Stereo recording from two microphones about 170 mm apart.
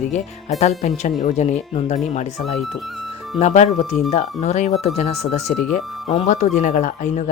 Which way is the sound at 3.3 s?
40° left (ahead or behind).